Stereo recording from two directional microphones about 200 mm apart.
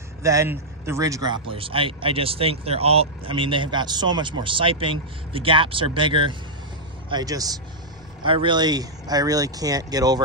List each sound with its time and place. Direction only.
0.2 s speech: 15° right (ahead or behind)